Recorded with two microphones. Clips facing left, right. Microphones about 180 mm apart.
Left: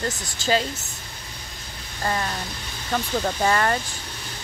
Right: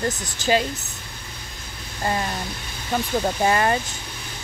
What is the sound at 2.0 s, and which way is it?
A woman's voice, 20° right (ahead or behind).